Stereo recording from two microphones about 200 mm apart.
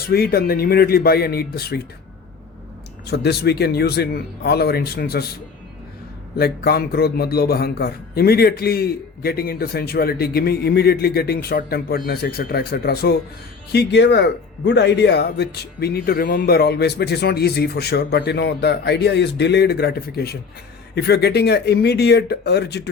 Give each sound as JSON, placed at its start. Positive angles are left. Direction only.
{"t": 0.0, "sound": "a man's voice", "side_deg": 50}
{"t": 3.1, "sound": "a man's voice", "side_deg": 55}
{"t": 6.3, "sound": "a man's voice", "side_deg": 50}